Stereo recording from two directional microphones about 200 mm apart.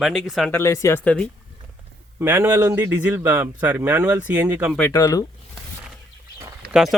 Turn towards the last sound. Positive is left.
turn(degrees=0)  # may be behind; listen again after turning